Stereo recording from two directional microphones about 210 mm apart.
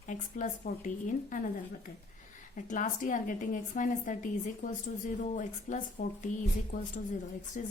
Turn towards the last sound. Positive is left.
turn(degrees=35)  # may be behind; listen again after turning